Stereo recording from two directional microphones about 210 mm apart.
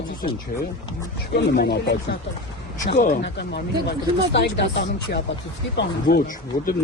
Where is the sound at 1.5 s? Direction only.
50° left (ahead or behind).